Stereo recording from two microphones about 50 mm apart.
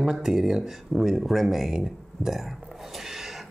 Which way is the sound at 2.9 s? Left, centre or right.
Centre.